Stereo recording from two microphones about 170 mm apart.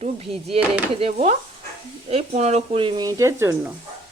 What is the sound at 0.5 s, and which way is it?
Speech, 35° right (ahead or behind).